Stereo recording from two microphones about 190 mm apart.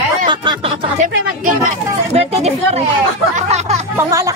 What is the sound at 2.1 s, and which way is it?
Speech, 35° right (ahead or behind).